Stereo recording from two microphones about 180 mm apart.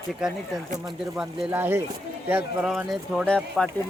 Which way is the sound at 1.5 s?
10° right (ahead or behind).